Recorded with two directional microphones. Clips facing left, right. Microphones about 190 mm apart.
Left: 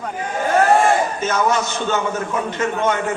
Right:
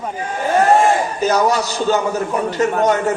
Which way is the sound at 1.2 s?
35° right (ahead or behind).